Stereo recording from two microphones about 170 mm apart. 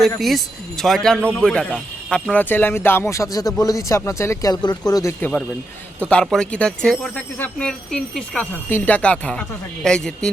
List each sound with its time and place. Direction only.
0.2 s a man's voice: centre (ahead or behind); by 5.1 s 20° left (ahead or behind)
6.1 s a man's voice: 5° left (ahead or behind)